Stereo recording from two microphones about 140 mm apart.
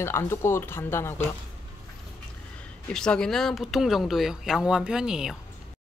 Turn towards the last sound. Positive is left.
turn(degrees=-5)  # may be behind; listen again after turning